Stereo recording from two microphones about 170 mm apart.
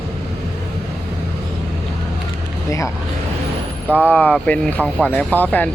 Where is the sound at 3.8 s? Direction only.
10° right (ahead or behind).